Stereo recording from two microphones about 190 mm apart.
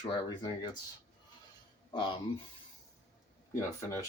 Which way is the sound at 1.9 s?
25° left (ahead or behind).